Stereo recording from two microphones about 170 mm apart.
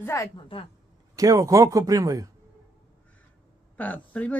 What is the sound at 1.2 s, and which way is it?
Speech, 20° right (ahead or behind).